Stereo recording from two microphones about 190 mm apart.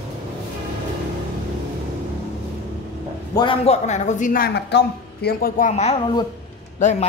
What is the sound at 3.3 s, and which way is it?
A man's voice, 25° left (ahead or behind).